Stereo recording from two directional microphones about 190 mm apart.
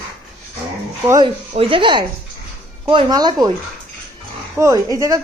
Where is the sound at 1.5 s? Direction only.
30° right (ahead or behind).